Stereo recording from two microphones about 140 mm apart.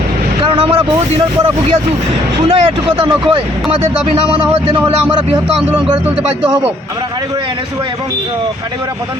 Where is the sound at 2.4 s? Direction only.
40° right (ahead or behind).